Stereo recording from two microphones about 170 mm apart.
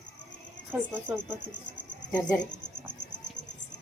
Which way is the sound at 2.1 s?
25° left (ahead or behind).